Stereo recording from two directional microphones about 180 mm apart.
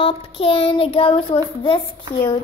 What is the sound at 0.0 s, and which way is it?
Child singing, 30° left (ahead or behind).